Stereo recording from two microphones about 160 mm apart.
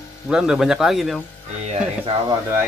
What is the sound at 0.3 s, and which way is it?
Speech, 5° right (ahead or behind).